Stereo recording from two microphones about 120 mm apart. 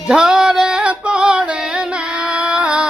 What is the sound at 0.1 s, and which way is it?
Music, 5° right (ahead or behind).